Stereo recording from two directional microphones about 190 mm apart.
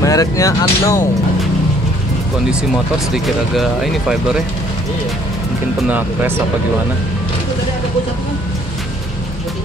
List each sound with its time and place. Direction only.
0.0 s speech: 20° left (ahead or behind)
3.5 s speech: centre (ahead or behind)
5.9 s speech: 10° right (ahead or behind)